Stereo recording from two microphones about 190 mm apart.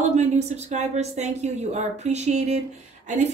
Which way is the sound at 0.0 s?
35° right (ahead or behind).